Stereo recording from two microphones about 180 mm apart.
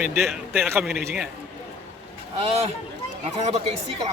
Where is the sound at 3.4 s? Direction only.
35° right (ahead or behind).